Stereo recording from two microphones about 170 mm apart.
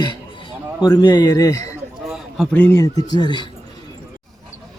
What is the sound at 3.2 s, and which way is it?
Speech, 25° left (ahead or behind).